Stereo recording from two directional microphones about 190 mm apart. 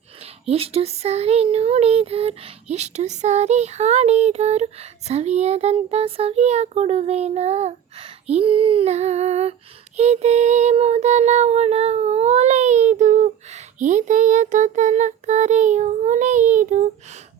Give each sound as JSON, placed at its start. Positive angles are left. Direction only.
{"t": 0.2, "sound": "speech", "side_deg": -30}